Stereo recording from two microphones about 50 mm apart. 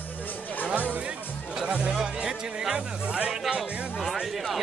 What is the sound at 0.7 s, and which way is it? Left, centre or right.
Music, right.